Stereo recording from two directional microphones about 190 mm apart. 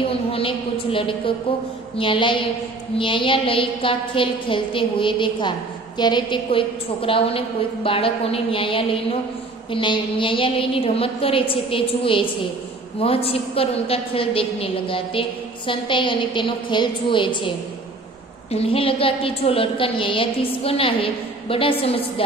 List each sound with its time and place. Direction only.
0.0 s a woman's voice: 30° left (ahead or behind)
18.5 s a woman's voice: 30° left (ahead or behind)